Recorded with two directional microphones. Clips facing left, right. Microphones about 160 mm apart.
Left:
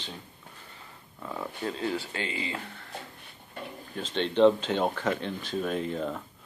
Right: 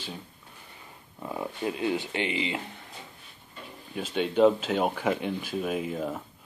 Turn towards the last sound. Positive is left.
turn(degrees=-5)  # may be behind; listen again after turning